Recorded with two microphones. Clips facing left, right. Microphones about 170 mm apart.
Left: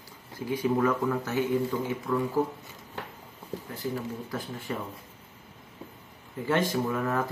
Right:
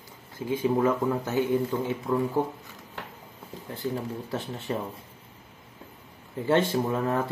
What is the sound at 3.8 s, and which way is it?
Speech, 15° left (ahead or behind).